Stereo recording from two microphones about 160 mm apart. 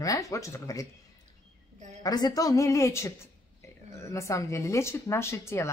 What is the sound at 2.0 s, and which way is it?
Speech, 25° left (ahead or behind).